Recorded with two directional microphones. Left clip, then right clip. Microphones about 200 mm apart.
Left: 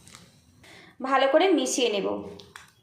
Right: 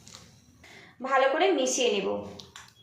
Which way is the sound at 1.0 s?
45° left (ahead or behind).